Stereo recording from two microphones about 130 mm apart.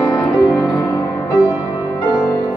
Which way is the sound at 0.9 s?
20° left (ahead or behind).